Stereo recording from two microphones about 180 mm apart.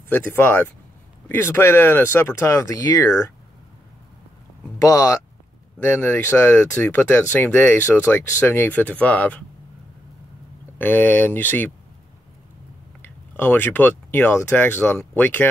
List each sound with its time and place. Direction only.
0.1 s speech: 10° left (ahead or behind)
4.7 s speech: 20° left (ahead or behind)
10.8 s speech: 10° left (ahead or behind)
13.0 s speech: 10° left (ahead or behind)